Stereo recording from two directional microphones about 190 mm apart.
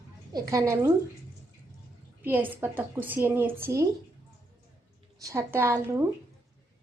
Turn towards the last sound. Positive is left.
turn(degrees=-15)  # may be behind; listen again after turning